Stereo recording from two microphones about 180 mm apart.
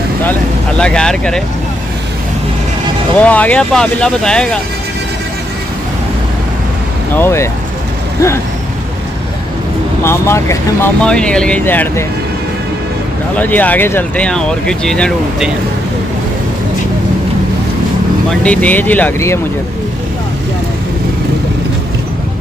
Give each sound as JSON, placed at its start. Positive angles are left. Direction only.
{"t": 0.2, "sound": "speech", "side_deg": 5}
{"t": 3.2, "sound": "speech", "side_deg": 10}
{"t": 7.2, "sound": "speech", "side_deg": 15}
{"t": 10.0, "sound": "speech", "side_deg": 15}
{"t": 13.4, "sound": "speech", "side_deg": 10}
{"t": 18.4, "sound": "speech", "side_deg": 5}